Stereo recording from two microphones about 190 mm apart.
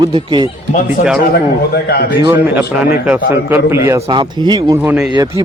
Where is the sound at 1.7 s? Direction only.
55° left (ahead or behind).